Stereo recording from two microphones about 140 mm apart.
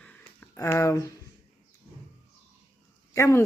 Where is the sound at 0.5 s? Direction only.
20° left (ahead or behind).